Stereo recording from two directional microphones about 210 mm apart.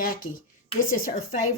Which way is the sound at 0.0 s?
40° left (ahead or behind).